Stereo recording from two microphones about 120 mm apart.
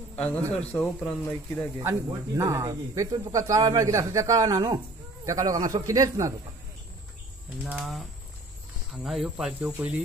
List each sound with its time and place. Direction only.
0.1 s a sound: 15° left (ahead or behind)
0.6 s speech: 10° left (ahead or behind)
1.8 s speech: 25° right (ahead or behind)
7.4 s speech: 10° right (ahead or behind)
9.6 s speech: 15° right (ahead or behind)